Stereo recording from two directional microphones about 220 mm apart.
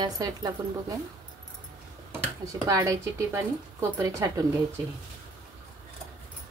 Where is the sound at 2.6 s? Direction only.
15° right (ahead or behind).